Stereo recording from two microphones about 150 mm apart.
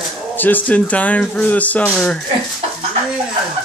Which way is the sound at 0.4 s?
10° left (ahead or behind).